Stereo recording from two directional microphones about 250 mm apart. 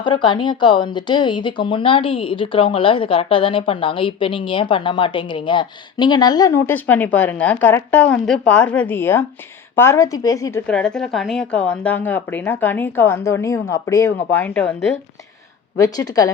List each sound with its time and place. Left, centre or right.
0.0 s speech: centre
10.7 s speech: centre